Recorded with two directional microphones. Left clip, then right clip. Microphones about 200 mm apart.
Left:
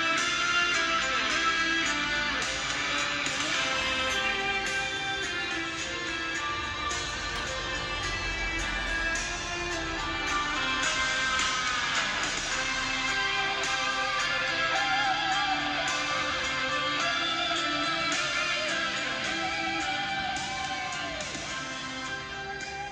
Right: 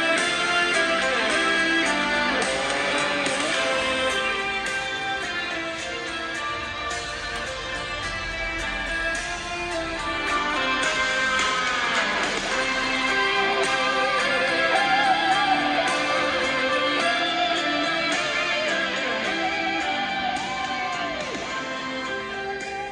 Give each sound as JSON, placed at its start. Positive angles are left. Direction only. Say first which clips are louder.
{"t": 0.0, "sound": "music", "louder": "right 5 dB", "side_deg": -35}
{"t": 10.3, "sound": "music", "louder": "right 6 dB", "side_deg": -35}